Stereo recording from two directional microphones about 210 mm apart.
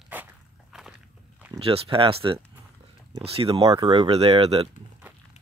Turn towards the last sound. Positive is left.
turn(degrees=-30)  # may be behind; listen again after turning